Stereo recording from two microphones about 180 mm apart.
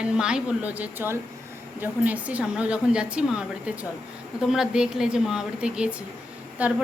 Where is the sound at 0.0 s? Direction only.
5° right (ahead or behind).